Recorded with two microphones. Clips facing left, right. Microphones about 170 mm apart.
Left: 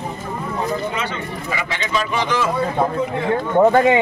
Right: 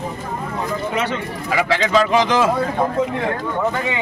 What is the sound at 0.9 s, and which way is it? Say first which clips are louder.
Speech: right 3 dB; 70° right (ahead or behind).